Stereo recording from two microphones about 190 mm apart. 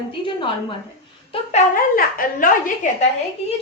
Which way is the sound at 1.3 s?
30° left (ahead or behind).